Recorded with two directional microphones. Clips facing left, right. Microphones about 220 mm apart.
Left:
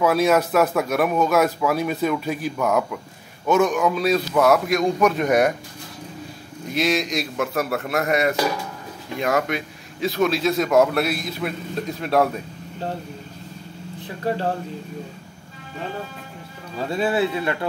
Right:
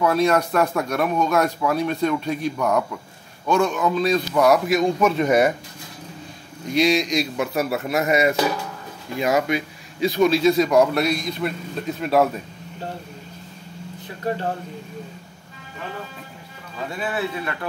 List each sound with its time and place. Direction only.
0.0 s speech: 5° left (ahead or behind)
3.4 s speech: 20° left (ahead or behind); by 5.5 s centre (ahead or behind)
6.7 s speech: centre (ahead or behind)
16.7 s speech: 30° left (ahead or behind)